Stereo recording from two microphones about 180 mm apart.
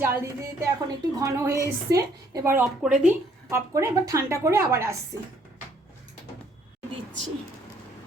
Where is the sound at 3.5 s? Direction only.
15° right (ahead or behind).